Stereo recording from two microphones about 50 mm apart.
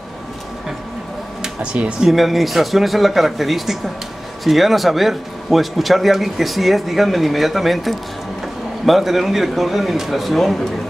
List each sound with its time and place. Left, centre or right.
1.4 s speech: centre
2.0 s a man's voice: centre